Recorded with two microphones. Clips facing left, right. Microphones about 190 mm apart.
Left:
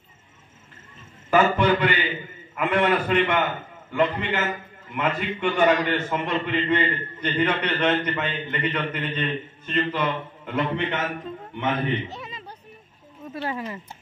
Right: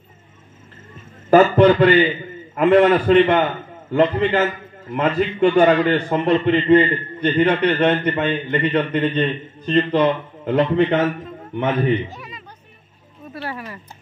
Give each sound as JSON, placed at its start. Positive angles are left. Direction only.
{"t": 1.3, "sound": "a man's voice", "side_deg": -40}
{"t": 12.1, "sound": "a sound", "side_deg": 25}
{"t": 13.3, "sound": "speech", "side_deg": 20}